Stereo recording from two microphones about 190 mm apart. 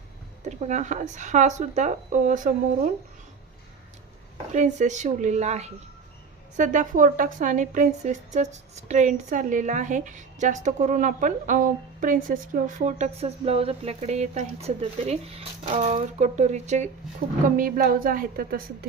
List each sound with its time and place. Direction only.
0.4 s a woman's voice: 35° right (ahead or behind)
4.5 s a woman's voice: 40° right (ahead or behind)